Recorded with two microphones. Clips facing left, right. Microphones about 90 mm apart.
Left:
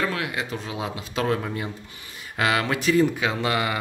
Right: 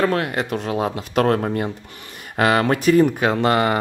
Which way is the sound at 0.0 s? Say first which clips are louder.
Right 7 dB; 45° right (ahead or behind).